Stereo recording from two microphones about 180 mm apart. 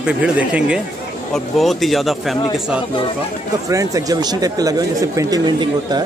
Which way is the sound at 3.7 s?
20° right (ahead or behind).